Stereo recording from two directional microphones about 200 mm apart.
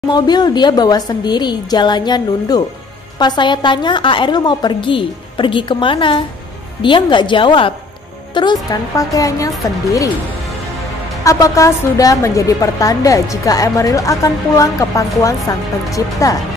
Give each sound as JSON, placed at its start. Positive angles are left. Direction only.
{"t": 0.1, "sound": "a woman's voice", "side_deg": 20}
{"t": 11.2, "sound": "a woman's voice", "side_deg": 15}